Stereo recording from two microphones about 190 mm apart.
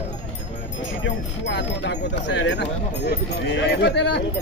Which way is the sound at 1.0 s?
70° left (ahead or behind).